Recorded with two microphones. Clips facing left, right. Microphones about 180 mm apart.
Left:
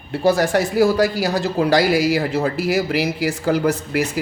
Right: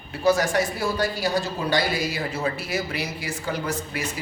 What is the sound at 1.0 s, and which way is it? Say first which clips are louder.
Speech: left 6 dB; 85° left.